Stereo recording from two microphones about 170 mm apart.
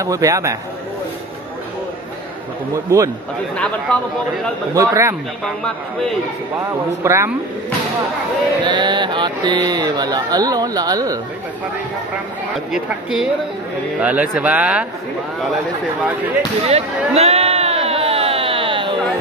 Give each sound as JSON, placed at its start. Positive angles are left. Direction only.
{"t": 0.0, "sound": "mantra", "side_deg": -20}
{"t": 2.9, "sound": "speech", "side_deg": -15}
{"t": 3.5, "sound": "a woman's voice", "side_deg": 5}
{"t": 4.7, "sound": "speech", "side_deg": -20}
{"t": 7.0, "sound": "speech", "side_deg": -15}
{"t": 8.6, "sound": "mantra", "side_deg": -25}
{"t": 12.7, "sound": "a woman's voice", "side_deg": -5}
{"t": 16.6, "sound": "a sound", "side_deg": -40}